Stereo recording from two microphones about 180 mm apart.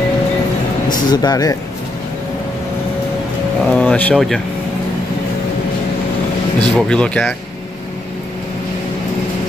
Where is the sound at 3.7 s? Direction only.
5° left (ahead or behind).